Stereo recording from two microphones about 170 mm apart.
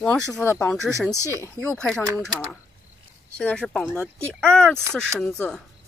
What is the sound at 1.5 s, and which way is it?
Speech, 5° left (ahead or behind).